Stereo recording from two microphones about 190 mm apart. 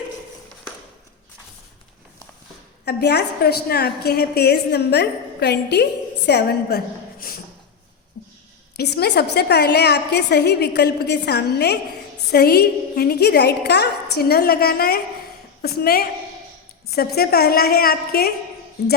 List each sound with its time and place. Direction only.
2.8 s a woman's voice: 60° left (ahead or behind)
8.7 s a woman's voice: 60° left (ahead or behind)